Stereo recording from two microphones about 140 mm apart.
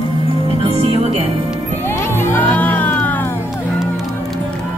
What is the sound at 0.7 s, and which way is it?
Music, 45° right (ahead or behind).